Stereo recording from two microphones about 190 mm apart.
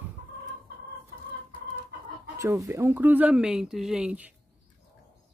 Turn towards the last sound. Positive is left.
turn(degrees=-5)  # may be behind; listen again after turning